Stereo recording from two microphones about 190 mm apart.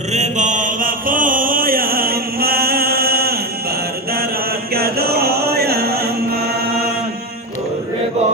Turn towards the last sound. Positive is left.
turn(degrees=-55)  # may be behind; listen again after turning